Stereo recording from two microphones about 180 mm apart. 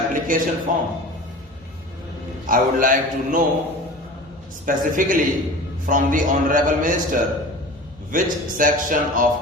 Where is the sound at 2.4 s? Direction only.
50° right (ahead or behind).